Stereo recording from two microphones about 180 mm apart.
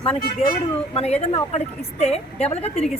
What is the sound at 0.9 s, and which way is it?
Speech, 35° left (ahead or behind).